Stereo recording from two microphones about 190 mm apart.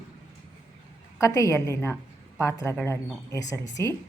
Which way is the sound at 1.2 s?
15° left (ahead or behind).